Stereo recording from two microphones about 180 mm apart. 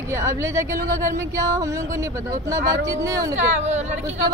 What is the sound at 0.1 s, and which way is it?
A woman's voice, 15° right (ahead or behind).